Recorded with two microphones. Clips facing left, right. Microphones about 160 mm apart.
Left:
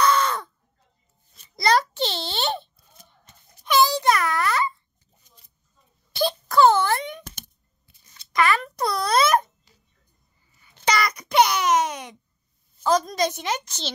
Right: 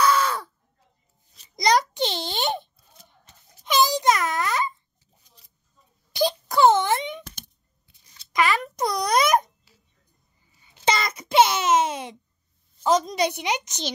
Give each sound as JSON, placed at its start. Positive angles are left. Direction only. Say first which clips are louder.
{"t": 0.0, "sound": "caw", "louder": "even", "side_deg": -5}
{"t": 1.6, "sound": "a child's voice", "louder": "even", "side_deg": -15}
{"t": 3.6, "sound": "music for children", "louder": "left 1 dB", "side_deg": -20}
{"t": 6.1, "sound": "wail", "louder": "left 1 dB", "side_deg": -20}
{"t": 7.2, "sound": "a sound", "louder": "left 1 dB", "side_deg": 50}
{"t": 8.3, "sound": "a sound", "louder": "left 1 dB", "side_deg": -15}
{"t": 8.7, "sound": "music for children", "louder": "even", "side_deg": -20}
{"t": 10.6, "sound": "a sound", "louder": "left 1 dB", "side_deg": -20}
{"t": 12.8, "sound": "a woman's voice", "louder": "even", "side_deg": -20}